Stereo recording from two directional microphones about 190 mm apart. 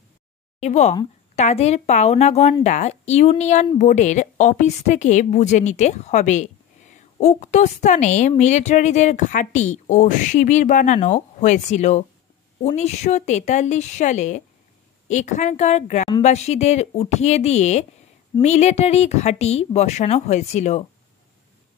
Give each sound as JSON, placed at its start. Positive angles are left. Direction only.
{"t": 0.6, "sound": "speech", "side_deg": 35}